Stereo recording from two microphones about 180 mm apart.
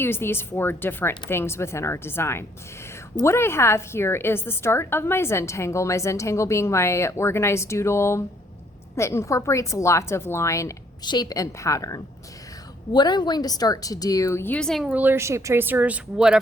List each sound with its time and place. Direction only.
0.0 s a woman's voice: 15° left (ahead or behind); by 16.4 s 5° right (ahead or behind)